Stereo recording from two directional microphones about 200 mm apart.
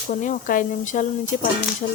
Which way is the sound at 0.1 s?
40° left (ahead or behind).